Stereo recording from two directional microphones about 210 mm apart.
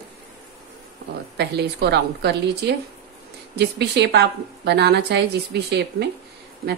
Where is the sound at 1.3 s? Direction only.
50° right (ahead or behind).